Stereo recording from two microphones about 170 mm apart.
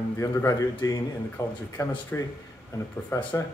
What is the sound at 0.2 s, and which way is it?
Speech, 20° left (ahead or behind).